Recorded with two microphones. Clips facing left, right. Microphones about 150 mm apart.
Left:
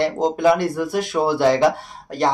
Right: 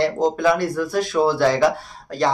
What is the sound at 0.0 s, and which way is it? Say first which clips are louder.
Speech: left 1 dB; 20° left (ahead or behind).